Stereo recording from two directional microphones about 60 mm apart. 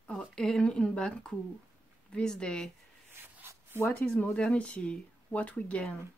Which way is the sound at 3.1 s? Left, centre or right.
Right.